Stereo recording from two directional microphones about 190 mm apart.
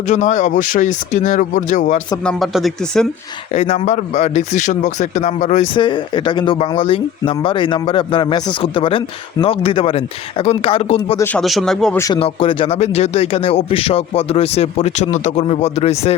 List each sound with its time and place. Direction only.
0.1 s speech: 40° left (ahead or behind)
2.2 s speech: centre (ahead or behind)
3.5 s speech: 30° left (ahead or behind)
5.7 s speech: 25° left (ahead or behind)
11.2 s speech: 5° left (ahead or behind)
11.9 s speech: 15° left (ahead or behind)
12.2 s speech: 30° left (ahead or behind)